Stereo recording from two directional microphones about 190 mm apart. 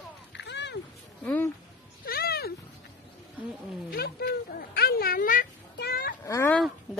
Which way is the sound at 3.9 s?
55° left (ahead or behind).